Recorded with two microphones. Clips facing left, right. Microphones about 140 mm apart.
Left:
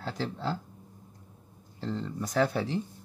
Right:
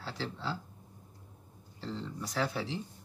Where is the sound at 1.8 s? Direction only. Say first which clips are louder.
Left 5 dB; 50° left (ahead or behind).